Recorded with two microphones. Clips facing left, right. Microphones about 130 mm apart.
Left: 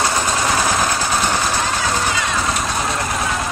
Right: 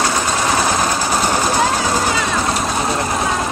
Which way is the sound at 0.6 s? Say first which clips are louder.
Right 1 dB; 5° right (ahead or behind).